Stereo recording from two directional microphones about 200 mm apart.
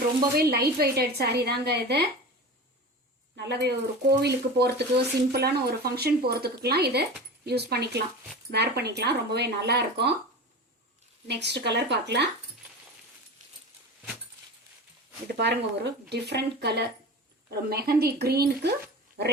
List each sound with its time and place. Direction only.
0.3 s a woman's voice: 50° right (ahead or behind)
3.3 s a woman's voice: 55° right (ahead or behind)
11.3 s speech: 55° right (ahead or behind)
15.3 s a woman's voice: 55° right (ahead or behind)